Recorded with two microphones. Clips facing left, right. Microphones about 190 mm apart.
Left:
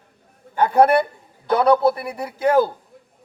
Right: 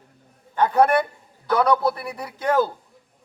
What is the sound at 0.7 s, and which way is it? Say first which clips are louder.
A man's voice: left 4 dB; 25° left (ahead or behind).